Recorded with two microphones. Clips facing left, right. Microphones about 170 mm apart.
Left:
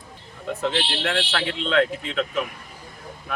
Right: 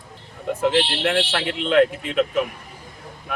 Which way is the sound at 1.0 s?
20° right (ahead or behind).